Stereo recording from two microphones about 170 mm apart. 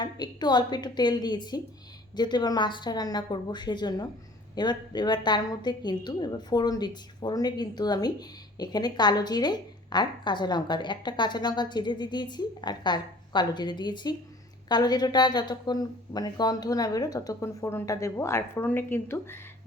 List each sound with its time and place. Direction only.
0.0 s a woman's voice: 25° left (ahead or behind)